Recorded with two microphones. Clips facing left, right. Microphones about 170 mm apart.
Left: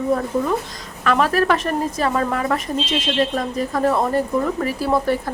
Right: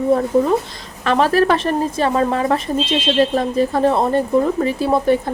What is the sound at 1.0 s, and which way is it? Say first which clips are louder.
Speech: right 3 dB; 30° right (ahead or behind).